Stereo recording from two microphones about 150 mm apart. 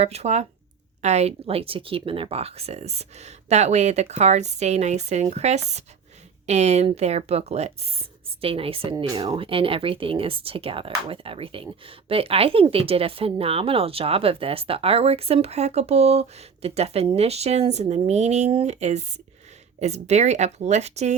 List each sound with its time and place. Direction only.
0.0 s speech: 45° right (ahead or behind)